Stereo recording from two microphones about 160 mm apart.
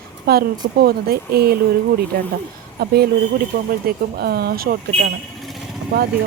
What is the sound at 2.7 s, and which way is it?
Speech, 80° right.